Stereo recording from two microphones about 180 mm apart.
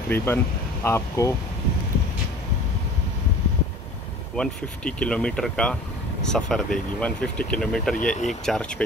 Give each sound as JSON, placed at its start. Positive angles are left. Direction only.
{"t": 0.1, "sound": "speech", "side_deg": 10}
{"t": 4.4, "sound": "speech", "side_deg": 5}
{"t": 8.0, "sound": "speech", "side_deg": 45}
{"t": 8.3, "sound": "speech", "side_deg": 5}